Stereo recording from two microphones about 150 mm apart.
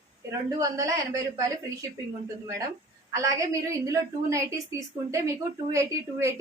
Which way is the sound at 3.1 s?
20° right (ahead or behind).